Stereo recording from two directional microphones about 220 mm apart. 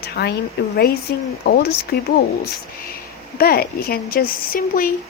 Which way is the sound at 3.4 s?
45° left (ahead or behind).